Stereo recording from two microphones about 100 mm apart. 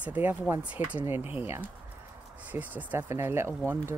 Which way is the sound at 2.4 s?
15° right (ahead or behind).